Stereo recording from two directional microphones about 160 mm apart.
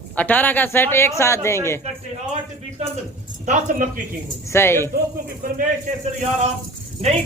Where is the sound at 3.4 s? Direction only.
50° right (ahead or behind).